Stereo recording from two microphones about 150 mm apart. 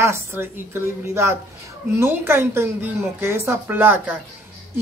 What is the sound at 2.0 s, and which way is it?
Speech, 15° right (ahead or behind).